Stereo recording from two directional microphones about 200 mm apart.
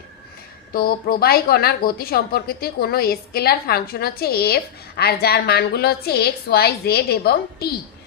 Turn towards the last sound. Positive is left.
turn(degrees=50)  # may be behind; listen again after turning